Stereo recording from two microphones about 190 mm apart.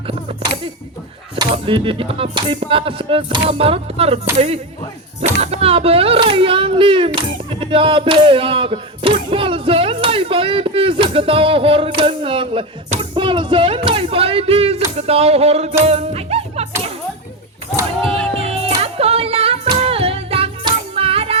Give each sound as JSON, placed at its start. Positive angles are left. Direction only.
{"t": 1.4, "sound": "speech", "side_deg": -25}
{"t": 14.9, "sound": "music", "side_deg": -35}
{"t": 18.1, "sound": "music", "side_deg": -30}
{"t": 18.8, "sound": "singing", "side_deg": -30}